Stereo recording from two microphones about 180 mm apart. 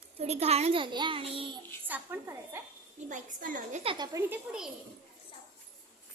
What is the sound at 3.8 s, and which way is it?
Speech, 25° right (ahead or behind).